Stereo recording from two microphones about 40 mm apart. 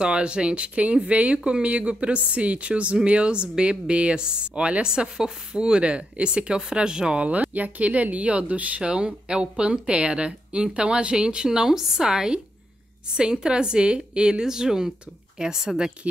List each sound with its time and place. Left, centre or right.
0.0 s speech: right
7.5 s speech: right
8.9 s a woman's voice: right